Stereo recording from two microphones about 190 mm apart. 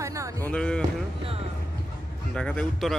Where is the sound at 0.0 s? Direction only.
15° right (ahead or behind).